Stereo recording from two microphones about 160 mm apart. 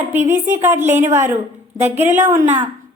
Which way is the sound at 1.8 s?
45° right (ahead or behind).